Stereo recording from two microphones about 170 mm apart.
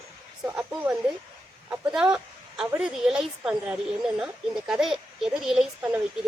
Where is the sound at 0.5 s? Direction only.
5° right (ahead or behind).